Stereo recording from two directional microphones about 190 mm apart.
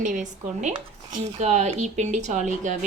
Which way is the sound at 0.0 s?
40° right (ahead or behind).